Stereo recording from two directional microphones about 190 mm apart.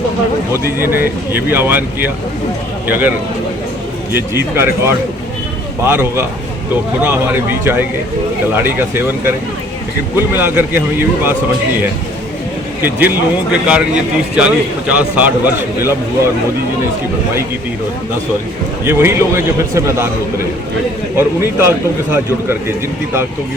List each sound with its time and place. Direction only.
0.5 s a man's voice: 10° right (ahead or behind)
4.1 s a man's voice: 10° right (ahead or behind)
12.8 s a man's voice: 10° right (ahead or behind)
18.9 s a man's voice: 15° right (ahead or behind)
21.2 s a man's voice: 15° right (ahead or behind)